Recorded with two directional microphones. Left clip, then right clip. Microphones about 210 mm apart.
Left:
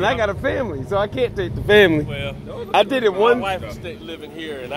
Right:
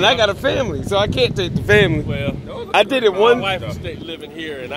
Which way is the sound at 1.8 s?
25° left (ahead or behind).